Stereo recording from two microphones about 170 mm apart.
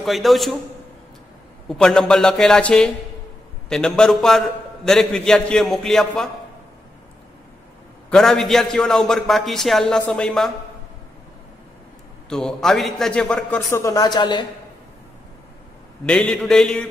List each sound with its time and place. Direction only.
0.0 s a man's voice: centre (ahead or behind)
1.7 s a man's voice: 5° left (ahead or behind)
8.1 s a man's voice: centre (ahead or behind)
12.3 s a man's voice: 5° left (ahead or behind)
13.6 s a woman's voice: 15° left (ahead or behind)
16.1 s a man's voice: 5° left (ahead or behind)